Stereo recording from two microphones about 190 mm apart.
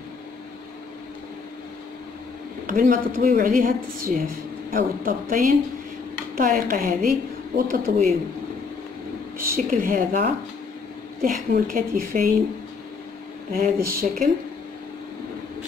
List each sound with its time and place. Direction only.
2.6 s a woman's voice: 45° right (ahead or behind)
9.4 s a woman's voice: 50° right (ahead or behind)
13.5 s a woman's voice: 50° right (ahead or behind)